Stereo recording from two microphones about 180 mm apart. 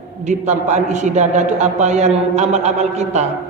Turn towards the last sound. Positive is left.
turn(degrees=-40)  # may be behind; listen again after turning